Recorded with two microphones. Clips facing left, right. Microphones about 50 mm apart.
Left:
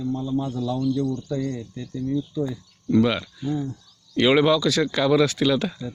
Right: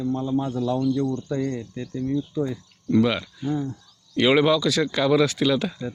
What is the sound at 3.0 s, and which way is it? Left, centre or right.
Speech, centre.